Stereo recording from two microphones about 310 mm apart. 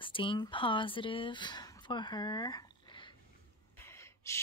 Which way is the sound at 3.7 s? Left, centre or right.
Centre.